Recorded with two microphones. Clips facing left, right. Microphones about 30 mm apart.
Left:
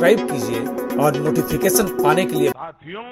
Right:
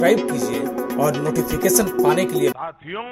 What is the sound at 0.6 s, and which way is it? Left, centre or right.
Speech, centre.